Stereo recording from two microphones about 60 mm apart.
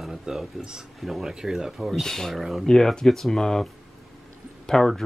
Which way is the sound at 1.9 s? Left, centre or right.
Centre.